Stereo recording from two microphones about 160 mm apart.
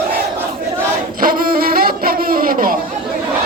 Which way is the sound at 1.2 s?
65° right (ahead or behind).